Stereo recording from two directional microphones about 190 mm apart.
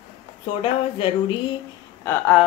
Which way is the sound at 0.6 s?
30° left (ahead or behind).